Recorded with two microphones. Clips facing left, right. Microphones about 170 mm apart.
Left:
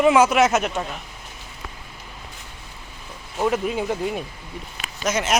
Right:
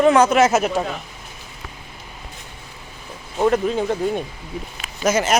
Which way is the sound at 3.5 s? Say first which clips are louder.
Right 3 dB; 5° left (ahead or behind).